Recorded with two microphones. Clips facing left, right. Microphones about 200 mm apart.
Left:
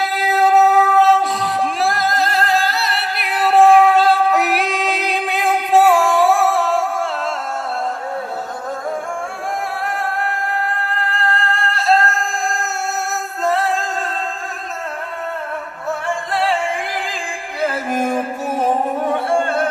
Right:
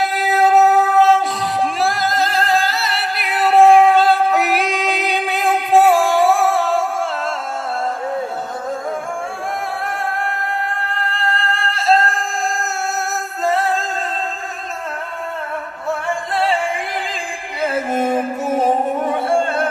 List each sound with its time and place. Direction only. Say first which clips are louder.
0.0 s music: right 1 dB; centre (ahead or behind)
11.0 s music: left 1 dB; centre (ahead or behind)
13.4 s singing: even; centre (ahead or behind)
16.3 s music: even; centre (ahead or behind)
17.9 s music: right 1 dB; 25° right (ahead or behind)
19.1 s music: even; centre (ahead or behind)